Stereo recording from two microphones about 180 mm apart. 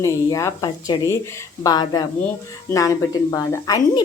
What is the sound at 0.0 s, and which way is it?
A woman's voice, 15° left (ahead or behind).